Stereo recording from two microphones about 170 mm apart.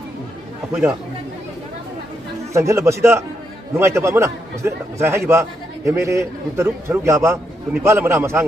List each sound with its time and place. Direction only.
2.5 s a man's voice: 15° right (ahead or behind)